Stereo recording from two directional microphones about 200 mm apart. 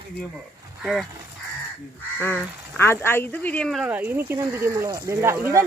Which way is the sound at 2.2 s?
10° left (ahead or behind).